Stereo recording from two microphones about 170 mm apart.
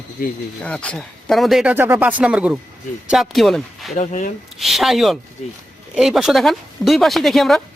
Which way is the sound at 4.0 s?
45° left (ahead or behind).